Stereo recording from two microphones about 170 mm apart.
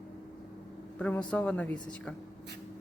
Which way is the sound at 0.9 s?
5° left (ahead or behind).